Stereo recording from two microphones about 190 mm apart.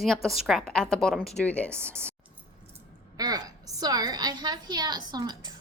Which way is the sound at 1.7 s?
15° right (ahead or behind).